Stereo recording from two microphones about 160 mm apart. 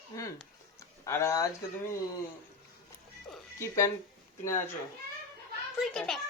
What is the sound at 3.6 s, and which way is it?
Speech, 20° left (ahead or behind).